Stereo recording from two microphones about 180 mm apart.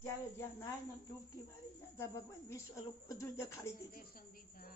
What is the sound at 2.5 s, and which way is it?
A woman's voice, 15° left (ahead or behind).